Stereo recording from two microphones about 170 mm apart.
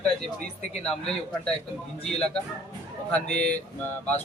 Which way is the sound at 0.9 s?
5° left (ahead or behind).